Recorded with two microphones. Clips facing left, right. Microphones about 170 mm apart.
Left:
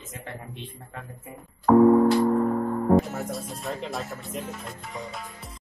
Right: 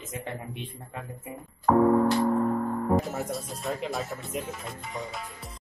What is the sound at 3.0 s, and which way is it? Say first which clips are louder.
Speech: left 4 dB; centre (ahead or behind).